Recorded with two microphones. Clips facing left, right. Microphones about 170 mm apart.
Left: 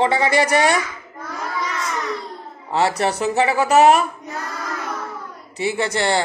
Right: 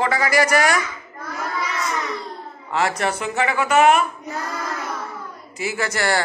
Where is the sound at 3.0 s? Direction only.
35° left (ahead or behind).